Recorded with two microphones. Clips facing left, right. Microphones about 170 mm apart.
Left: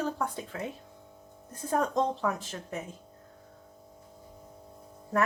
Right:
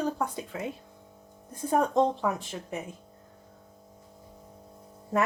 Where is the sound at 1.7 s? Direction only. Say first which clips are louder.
Right 4 dB; 15° right (ahead or behind).